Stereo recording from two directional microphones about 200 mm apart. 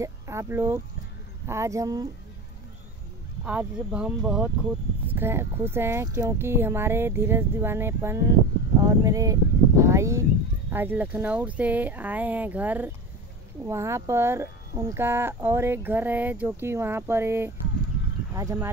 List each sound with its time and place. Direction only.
0.0 s speech: 15° right (ahead or behind)
3.4 s speech: 5° right (ahead or behind)